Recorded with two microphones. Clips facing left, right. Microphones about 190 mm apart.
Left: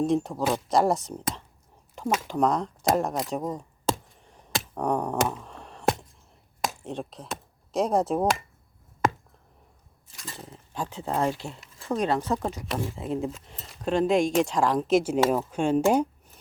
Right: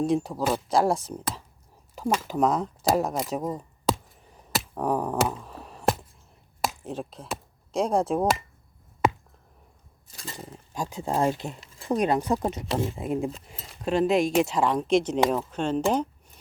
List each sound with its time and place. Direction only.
0.0 s speech: centre (ahead or behind)
2.2 s speech: 5° right (ahead or behind)
4.3 s finger snapping: 5° right (ahead or behind)
6.6 s speech: centre (ahead or behind)
10.2 s speech: 10° right (ahead or behind)
12.4 s speech: 25° right (ahead or behind); by 16.0 s 10° left (ahead or behind)